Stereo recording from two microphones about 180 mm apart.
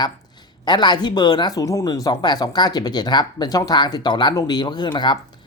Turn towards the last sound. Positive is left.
turn(degrees=25)  # may be behind; listen again after turning